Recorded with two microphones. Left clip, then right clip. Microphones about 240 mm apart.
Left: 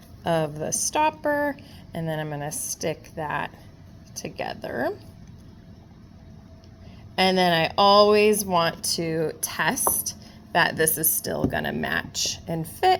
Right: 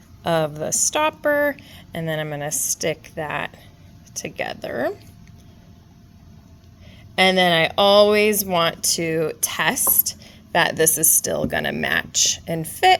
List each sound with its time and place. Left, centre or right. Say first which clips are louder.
0.2 s a woman's voice: right 4 dB; right
7.2 s a woman's voice: right 4 dB; right